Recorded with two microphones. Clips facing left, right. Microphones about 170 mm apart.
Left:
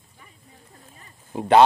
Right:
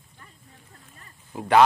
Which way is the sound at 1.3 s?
25° left (ahead or behind).